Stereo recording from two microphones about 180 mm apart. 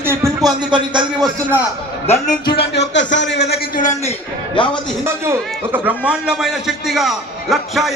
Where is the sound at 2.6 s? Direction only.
80° left.